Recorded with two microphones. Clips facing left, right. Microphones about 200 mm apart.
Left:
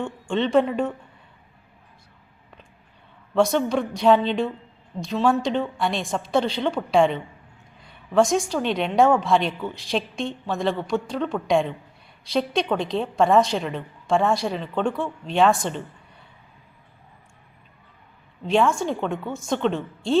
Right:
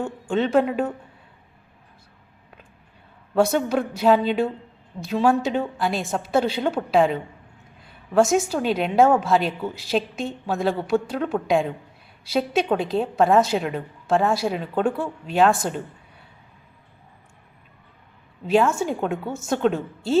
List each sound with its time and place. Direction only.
0.0 s a woman's voice: 5° right (ahead or behind)
3.3 s a woman's voice: 5° right (ahead or behind)
18.4 s a woman's voice: 5° right (ahead or behind)